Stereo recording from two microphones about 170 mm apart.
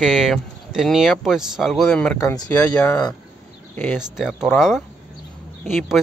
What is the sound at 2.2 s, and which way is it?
Speech, 20° left (ahead or behind).